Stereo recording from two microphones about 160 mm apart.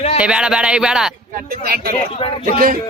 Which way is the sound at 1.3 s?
65° right (ahead or behind).